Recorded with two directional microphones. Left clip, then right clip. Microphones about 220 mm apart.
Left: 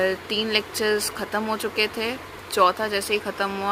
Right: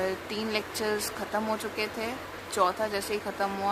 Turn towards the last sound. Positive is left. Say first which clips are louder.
# left 6 dB
turn(degrees=15)  # may be behind; listen again after turning